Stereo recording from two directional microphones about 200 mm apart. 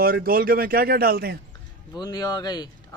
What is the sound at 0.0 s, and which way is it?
A man's voice, 45° right (ahead or behind).